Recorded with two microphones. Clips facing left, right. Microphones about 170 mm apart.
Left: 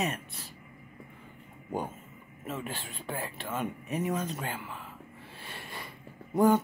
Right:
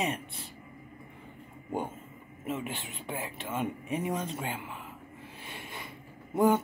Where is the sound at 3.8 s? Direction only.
25° right (ahead or behind).